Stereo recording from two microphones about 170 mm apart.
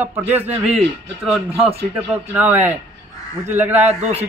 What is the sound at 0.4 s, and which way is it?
A woman's voice, 5° right (ahead or behind).